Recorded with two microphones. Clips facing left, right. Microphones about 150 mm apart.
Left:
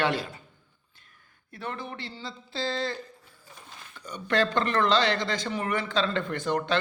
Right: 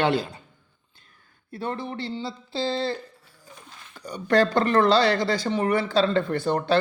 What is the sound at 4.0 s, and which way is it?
Speech, 35° right (ahead or behind).